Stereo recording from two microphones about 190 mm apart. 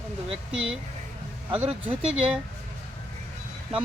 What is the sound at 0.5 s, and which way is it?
Speech, 5° right (ahead or behind).